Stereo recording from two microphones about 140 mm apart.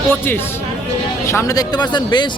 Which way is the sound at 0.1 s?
15° left (ahead or behind).